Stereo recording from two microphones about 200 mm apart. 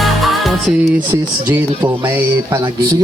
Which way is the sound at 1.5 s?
10° right (ahead or behind).